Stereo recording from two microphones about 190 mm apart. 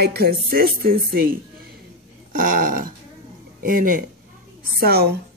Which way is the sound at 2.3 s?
45° right (ahead or behind).